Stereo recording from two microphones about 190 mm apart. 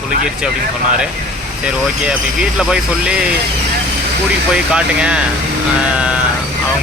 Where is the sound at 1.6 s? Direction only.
5° right (ahead or behind).